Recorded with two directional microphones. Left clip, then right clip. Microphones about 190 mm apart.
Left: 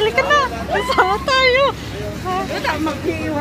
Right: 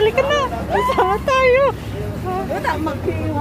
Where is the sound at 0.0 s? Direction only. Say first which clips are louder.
Left 1 dB; 15° right (ahead or behind).